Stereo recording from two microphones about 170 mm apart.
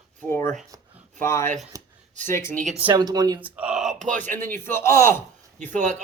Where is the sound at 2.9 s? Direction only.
25° right (ahead or behind).